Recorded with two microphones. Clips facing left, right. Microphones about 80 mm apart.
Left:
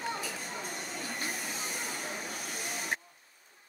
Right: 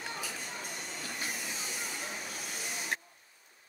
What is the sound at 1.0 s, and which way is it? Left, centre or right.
Train, left.